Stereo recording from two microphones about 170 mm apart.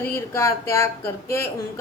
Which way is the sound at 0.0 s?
15° left (ahead or behind).